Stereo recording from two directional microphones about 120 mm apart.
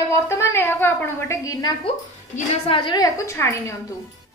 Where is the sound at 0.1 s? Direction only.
20° left (ahead or behind).